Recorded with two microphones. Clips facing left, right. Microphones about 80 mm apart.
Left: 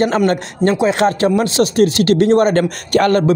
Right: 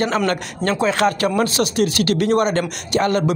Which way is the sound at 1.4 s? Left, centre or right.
Left.